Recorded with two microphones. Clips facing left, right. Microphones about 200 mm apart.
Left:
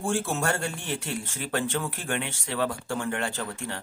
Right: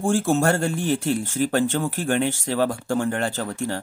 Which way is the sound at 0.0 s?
45° right (ahead or behind).